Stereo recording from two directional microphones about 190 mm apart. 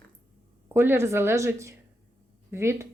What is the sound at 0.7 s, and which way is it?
Speech, 10° right (ahead or behind).